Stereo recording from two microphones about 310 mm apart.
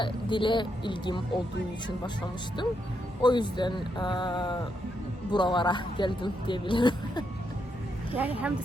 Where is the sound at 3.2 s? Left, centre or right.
Centre.